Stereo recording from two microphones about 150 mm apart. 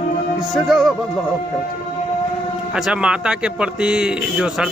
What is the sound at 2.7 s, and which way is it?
A man's voice, 5° right (ahead or behind).